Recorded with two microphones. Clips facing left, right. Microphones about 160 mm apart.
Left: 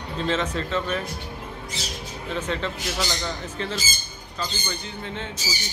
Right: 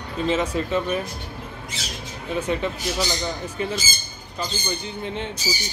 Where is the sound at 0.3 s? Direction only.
10° right (ahead or behind).